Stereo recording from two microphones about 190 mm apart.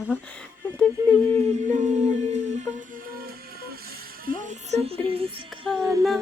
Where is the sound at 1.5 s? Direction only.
40° right (ahead or behind).